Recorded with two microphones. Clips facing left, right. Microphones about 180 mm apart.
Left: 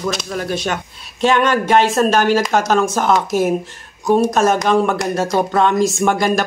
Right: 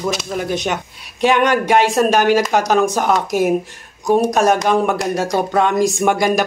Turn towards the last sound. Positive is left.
turn(degrees=-15)  # may be behind; listen again after turning